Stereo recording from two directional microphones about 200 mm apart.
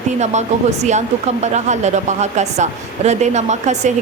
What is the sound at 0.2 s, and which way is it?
Speech, 35° right (ahead or behind).